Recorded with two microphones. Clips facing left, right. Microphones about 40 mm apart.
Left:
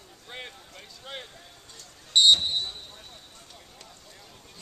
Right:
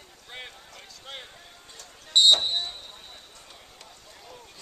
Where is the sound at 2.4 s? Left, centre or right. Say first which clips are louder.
Right 1 dB; centre.